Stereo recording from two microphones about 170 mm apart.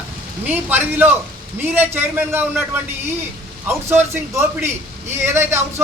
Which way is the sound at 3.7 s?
15° right (ahead or behind).